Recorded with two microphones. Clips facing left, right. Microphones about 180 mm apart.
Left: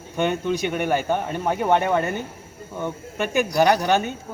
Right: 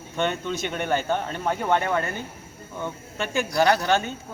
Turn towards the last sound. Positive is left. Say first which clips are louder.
# left 2 dB
turn(degrees=15)  # may be behind; listen again after turning